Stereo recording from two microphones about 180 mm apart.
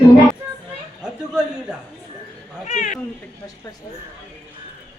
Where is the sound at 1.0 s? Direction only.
5° right (ahead or behind).